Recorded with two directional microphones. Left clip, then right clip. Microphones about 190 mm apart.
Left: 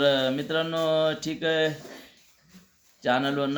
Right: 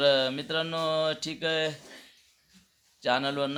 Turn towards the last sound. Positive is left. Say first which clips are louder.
# left 2 dB
turn(degrees=-20)  # may be behind; listen again after turning